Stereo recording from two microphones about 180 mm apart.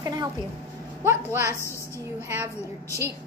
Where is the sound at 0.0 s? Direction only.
20° right (ahead or behind).